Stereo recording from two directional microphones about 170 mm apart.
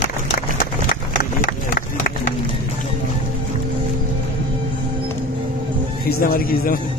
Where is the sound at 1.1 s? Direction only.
60° left (ahead or behind).